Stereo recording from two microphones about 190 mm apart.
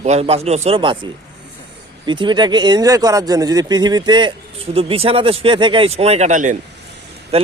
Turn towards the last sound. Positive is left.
turn(degrees=-30)  # may be behind; listen again after turning